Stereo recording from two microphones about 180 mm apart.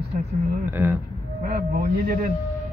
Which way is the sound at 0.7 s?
10° right (ahead or behind).